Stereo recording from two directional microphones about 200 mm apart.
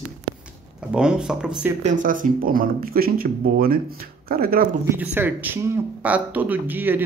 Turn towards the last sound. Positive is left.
turn(degrees=-10)  # may be behind; listen again after turning